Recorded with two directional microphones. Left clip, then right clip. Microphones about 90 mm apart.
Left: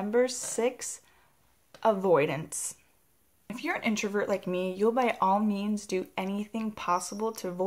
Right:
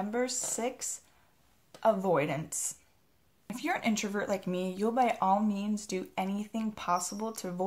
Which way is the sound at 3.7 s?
20° left (ahead or behind).